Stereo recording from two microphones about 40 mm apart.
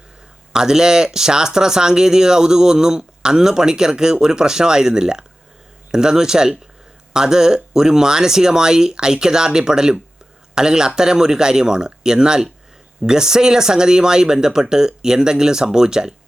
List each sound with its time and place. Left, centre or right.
0.5 s speech: centre